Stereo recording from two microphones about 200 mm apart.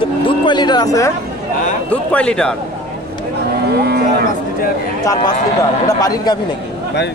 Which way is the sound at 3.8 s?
55° right (ahead or behind).